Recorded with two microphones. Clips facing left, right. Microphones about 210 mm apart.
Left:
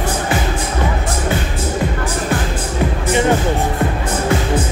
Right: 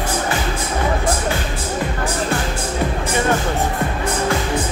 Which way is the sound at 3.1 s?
20° left (ahead or behind).